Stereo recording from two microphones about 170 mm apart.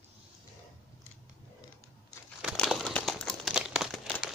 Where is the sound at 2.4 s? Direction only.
Centre (ahead or behind).